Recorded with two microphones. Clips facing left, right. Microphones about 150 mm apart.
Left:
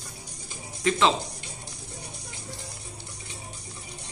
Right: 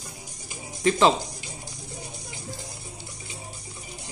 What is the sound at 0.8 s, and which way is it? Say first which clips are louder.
Speech: right 3 dB; 35° right (ahead or behind).